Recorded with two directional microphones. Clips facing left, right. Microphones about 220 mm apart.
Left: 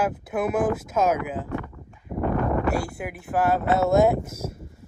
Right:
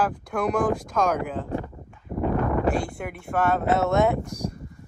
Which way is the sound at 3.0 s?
Centre (ahead or behind).